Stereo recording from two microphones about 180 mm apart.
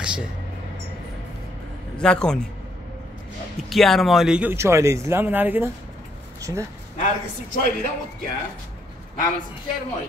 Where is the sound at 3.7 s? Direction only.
Centre (ahead or behind); by 6.6 s 20° right (ahead or behind).